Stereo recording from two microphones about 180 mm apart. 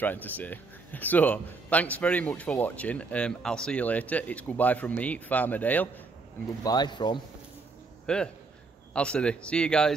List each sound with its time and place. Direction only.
0.0 s a man's voice: 10° left (ahead or behind)
6.6 s speech: 25° left (ahead or behind)
8.1 s speech: 5° left (ahead or behind)